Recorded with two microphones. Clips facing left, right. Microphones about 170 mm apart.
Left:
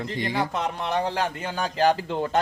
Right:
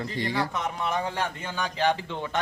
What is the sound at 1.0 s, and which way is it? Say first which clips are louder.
A man's voice: left 4 dB; 35° left (ahead or behind).